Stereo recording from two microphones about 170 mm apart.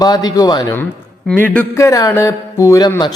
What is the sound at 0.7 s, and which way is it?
Speech, 10° left (ahead or behind).